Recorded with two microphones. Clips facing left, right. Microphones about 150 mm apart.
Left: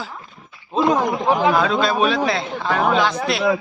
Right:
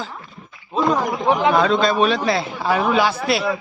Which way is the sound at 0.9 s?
20° left (ahead or behind).